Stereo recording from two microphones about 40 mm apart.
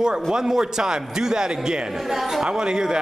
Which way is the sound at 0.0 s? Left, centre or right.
Centre.